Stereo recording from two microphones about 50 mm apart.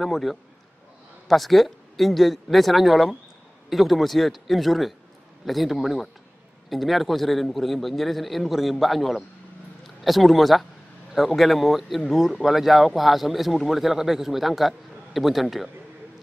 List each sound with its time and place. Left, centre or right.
0.0 s speech: centre